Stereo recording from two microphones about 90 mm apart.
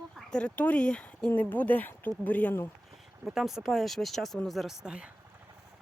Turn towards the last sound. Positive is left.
turn(degrees=-10)  # may be behind; listen again after turning